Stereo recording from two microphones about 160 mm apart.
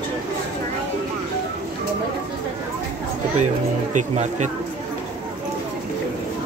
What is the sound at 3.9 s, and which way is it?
Speech, 45° right (ahead or behind).